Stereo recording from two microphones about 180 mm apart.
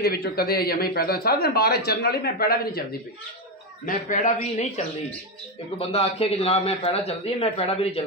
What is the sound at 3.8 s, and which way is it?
Speech, 45° left (ahead or behind).